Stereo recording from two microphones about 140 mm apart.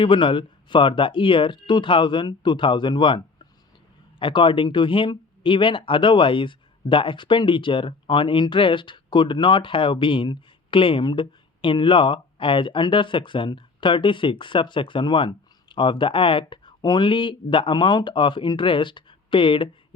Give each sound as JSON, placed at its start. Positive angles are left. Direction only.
{"t": 0.0, "sound": "speech", "side_deg": 35}